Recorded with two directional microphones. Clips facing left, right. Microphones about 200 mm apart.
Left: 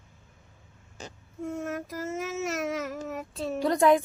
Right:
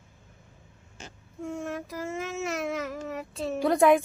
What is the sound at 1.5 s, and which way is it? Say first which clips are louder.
Speech: even; 5° left (ahead or behind).